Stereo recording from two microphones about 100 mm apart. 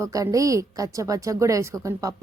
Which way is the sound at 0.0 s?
35° right (ahead or behind).